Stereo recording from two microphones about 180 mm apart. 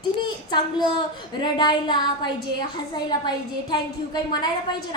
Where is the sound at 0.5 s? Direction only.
25° left (ahead or behind).